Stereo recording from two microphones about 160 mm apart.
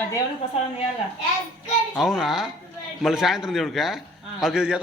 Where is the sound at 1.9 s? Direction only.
Centre (ahead or behind).